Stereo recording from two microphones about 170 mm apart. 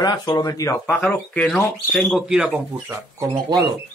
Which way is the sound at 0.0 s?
25° left (ahead or behind).